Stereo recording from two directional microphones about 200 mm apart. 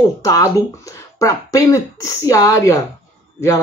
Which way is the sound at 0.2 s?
15° left (ahead or behind).